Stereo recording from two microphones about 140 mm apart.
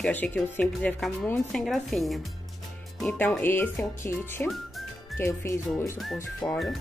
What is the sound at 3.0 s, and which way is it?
Speech, 10° left (ahead or behind).